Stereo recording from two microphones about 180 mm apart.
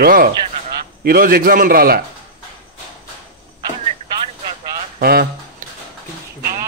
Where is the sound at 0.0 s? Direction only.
55° right (ahead or behind).